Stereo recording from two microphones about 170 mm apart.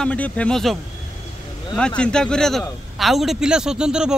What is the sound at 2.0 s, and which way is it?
Speech, 5° left (ahead or behind).